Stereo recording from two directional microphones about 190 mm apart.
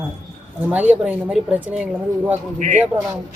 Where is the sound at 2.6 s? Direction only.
40° right (ahead or behind).